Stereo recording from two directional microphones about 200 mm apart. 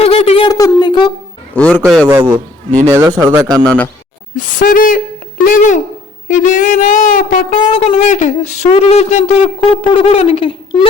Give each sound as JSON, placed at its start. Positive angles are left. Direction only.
{"t": 0.0, "sound": "a woman's voice", "side_deg": 30}
{"t": 1.5, "sound": "a man's voice", "side_deg": 5}
{"t": 2.0, "sound": "a man's voice", "side_deg": -15}
{"t": 4.4, "sound": "speech", "side_deg": 40}
{"t": 7.7, "sound": "speech", "side_deg": 30}